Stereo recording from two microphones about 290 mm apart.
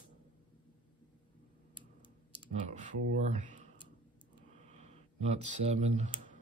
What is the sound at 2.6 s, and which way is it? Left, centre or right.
Speech, right.